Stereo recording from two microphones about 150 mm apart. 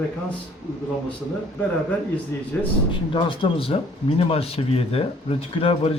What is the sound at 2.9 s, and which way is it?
Speech, 35° left (ahead or behind).